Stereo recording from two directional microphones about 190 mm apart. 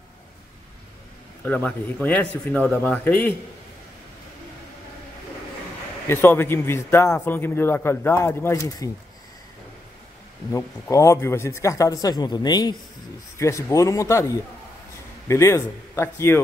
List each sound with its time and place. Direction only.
1.4 s a man's voice: 10° left (ahead or behind)
6.0 s a man's voice: 10° left (ahead or behind)
10.5 s a man's voice: 15° left (ahead or behind)